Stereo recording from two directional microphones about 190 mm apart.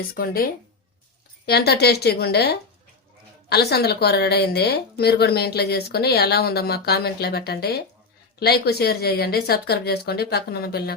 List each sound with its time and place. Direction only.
0.1 s a woman's voice: 50° left (ahead or behind)